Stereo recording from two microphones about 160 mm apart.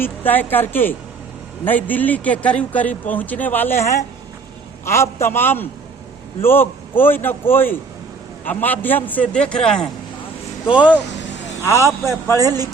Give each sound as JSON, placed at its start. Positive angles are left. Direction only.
{"t": 0.0, "sound": "a man's voice", "side_deg": 10}
{"t": 10.7, "sound": "speech", "side_deg": -10}